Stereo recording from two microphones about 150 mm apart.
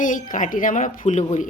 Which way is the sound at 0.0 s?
60° left (ahead or behind).